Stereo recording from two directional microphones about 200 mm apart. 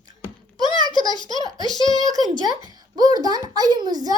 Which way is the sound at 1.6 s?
20° left (ahead or behind).